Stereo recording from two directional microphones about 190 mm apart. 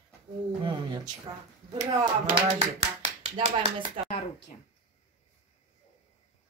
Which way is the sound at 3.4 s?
30° right (ahead or behind).